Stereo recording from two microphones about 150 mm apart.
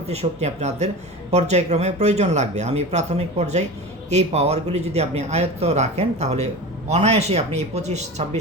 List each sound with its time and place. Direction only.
0.1 s speech: 45° right (ahead or behind)